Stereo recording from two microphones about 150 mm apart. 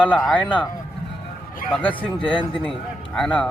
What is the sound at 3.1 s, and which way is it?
Speech, 5° left (ahead or behind).